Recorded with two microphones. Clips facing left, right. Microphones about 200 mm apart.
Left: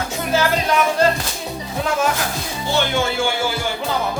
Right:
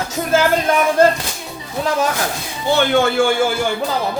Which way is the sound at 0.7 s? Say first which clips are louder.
Even; 50° right (ahead or behind).